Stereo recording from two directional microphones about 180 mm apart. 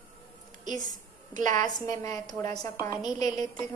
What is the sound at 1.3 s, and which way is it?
Speech, 45° right (ahead or behind).